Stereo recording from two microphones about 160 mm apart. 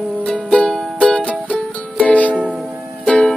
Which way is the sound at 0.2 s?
5° left (ahead or behind).